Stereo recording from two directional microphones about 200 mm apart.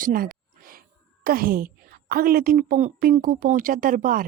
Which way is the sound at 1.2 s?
45° right (ahead or behind).